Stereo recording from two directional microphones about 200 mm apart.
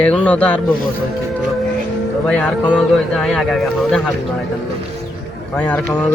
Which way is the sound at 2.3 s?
5° left (ahead or behind).